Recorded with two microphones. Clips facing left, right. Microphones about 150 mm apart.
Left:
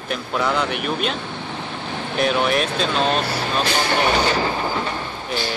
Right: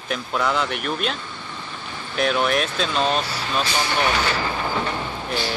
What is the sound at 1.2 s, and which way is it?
Vehicle, 70° left (ahead or behind).